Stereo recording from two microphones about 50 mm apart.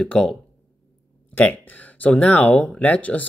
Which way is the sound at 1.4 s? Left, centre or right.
Left.